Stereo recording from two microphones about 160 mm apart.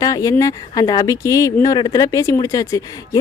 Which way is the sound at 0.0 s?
20° left (ahead or behind).